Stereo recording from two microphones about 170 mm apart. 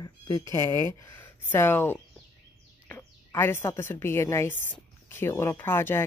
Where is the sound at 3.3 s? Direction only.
15° left (ahead or behind).